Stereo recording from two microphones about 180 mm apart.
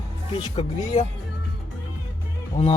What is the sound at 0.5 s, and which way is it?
Speech, 35° left (ahead or behind).